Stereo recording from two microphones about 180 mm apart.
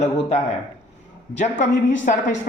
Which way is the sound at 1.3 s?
40° left (ahead or behind).